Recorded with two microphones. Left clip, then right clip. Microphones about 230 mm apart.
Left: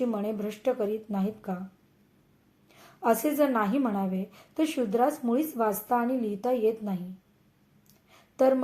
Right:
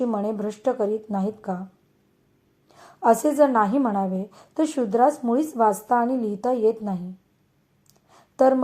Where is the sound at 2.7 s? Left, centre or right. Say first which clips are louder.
Right 7 dB; right.